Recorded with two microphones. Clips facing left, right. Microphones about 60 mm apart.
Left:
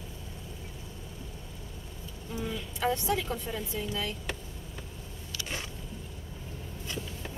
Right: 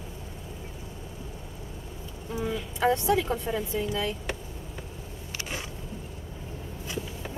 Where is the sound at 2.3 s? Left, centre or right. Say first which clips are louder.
Right 5 dB; centre.